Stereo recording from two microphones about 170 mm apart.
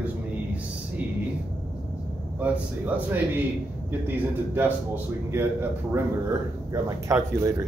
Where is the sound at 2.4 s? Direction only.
10° right (ahead or behind).